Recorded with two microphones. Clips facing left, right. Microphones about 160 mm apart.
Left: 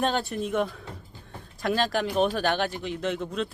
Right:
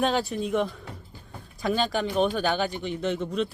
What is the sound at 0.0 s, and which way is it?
Speech, centre (ahead or behind).